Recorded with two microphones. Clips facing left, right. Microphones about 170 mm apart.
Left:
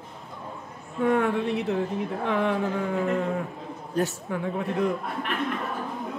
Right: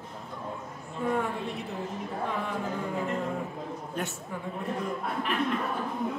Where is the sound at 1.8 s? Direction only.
Centre (ahead or behind).